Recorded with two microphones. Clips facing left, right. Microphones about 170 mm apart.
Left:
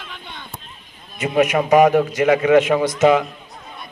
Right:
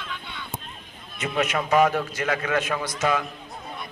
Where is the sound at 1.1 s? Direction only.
15° left (ahead or behind).